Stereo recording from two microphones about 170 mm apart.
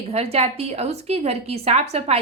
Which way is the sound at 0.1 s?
35° right (ahead or behind).